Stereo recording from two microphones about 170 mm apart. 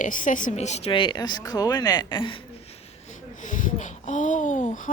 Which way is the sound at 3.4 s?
50° left (ahead or behind).